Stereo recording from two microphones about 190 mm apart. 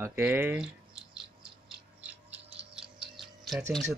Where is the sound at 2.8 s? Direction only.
Centre (ahead or behind).